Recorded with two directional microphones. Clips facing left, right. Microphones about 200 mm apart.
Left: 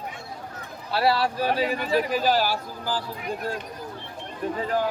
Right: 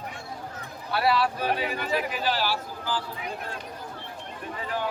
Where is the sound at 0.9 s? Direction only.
30° left (ahead or behind).